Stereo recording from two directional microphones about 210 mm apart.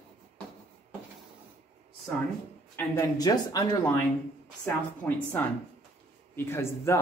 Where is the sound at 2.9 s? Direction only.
20° left (ahead or behind).